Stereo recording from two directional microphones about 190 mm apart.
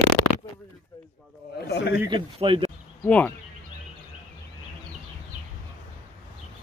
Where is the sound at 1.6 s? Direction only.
60° left (ahead or behind).